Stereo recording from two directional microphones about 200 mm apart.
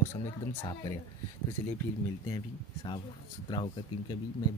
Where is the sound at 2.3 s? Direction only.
25° left (ahead or behind).